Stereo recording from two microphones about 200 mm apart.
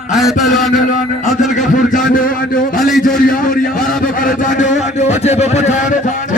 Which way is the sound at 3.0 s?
45° left (ahead or behind).